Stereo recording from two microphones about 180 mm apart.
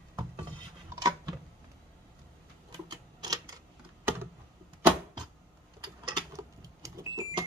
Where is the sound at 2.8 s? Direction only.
20° right (ahead or behind).